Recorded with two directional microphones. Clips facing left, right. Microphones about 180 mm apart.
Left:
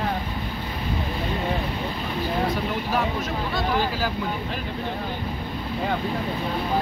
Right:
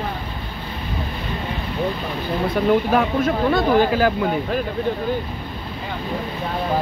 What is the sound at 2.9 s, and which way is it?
Speech, 55° right (ahead or behind).